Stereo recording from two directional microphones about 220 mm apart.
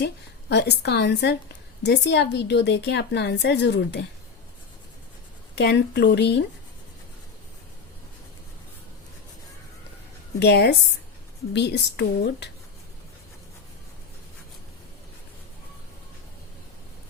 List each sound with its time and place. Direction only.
0.0 s a woman's voice: 50° left (ahead or behind)
5.5 s a woman's voice: 50° left (ahead or behind)
10.4 s a woman's voice: 50° left (ahead or behind)